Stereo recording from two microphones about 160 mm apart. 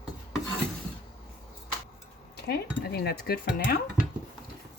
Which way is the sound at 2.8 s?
80° left.